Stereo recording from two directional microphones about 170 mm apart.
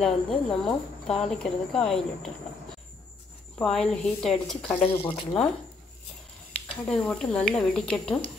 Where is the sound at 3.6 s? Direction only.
5° left (ahead or behind).